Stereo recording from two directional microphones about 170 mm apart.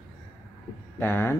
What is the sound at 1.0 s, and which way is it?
Speech, 15° left (ahead or behind).